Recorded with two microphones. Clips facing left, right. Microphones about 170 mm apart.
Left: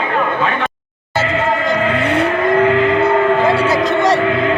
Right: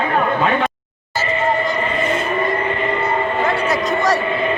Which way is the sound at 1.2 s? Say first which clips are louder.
Left 1 dB; 90° left.